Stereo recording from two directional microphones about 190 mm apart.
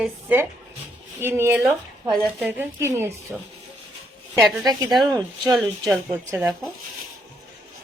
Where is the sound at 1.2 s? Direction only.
10° right (ahead or behind).